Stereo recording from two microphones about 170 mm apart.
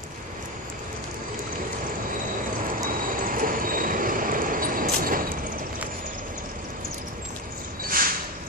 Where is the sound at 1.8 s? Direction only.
50° right (ahead or behind).